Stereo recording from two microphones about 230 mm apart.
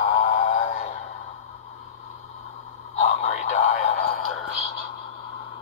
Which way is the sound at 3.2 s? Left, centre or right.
Left.